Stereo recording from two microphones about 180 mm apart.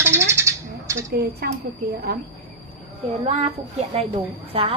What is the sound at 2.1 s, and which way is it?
Speech, 60° right (ahead or behind).